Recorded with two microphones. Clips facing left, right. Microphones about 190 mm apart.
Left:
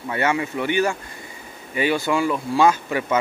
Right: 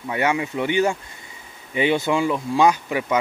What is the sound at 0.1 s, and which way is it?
Speech, 15° right (ahead or behind).